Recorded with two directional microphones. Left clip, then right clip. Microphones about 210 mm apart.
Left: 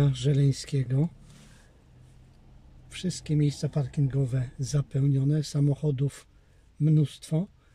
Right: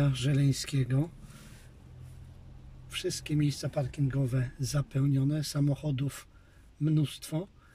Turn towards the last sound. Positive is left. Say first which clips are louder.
# left 3 dB
turn(degrees=25)  # may be behind; listen again after turning